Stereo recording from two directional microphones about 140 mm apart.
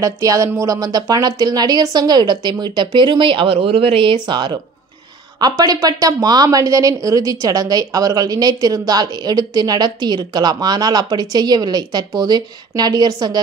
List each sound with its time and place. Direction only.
0.0 s a woman's voice: 25° right (ahead or behind)